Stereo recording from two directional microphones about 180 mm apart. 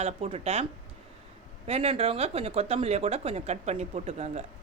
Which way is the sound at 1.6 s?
35° right (ahead or behind).